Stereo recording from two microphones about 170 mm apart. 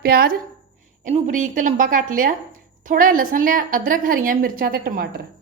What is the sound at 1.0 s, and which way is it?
A woman's voice, 50° right (ahead or behind).